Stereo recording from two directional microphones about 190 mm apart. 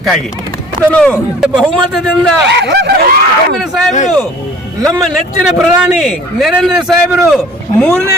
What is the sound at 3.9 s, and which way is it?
Speech, 40° left (ahead or behind).